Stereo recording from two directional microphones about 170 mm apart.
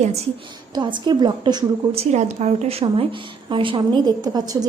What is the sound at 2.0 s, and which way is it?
A woman's voice, 40° right (ahead or behind).